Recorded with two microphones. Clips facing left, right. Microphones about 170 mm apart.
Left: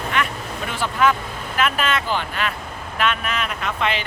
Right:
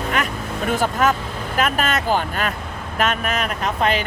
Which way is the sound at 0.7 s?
45° right (ahead or behind).